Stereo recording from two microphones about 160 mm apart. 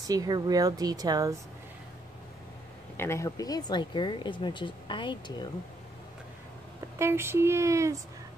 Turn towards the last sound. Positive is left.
turn(degrees=-20)  # may be behind; listen again after turning